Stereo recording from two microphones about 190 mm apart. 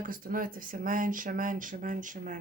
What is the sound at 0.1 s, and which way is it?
Speech, 45° right (ahead or behind).